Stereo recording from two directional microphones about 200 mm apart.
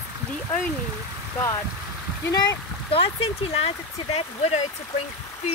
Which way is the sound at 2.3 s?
20° left (ahead or behind).